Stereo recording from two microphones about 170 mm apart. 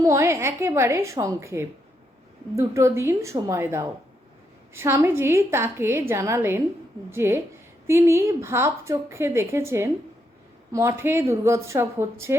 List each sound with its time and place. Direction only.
0.0 s a woman's voice: 15° right (ahead or behind)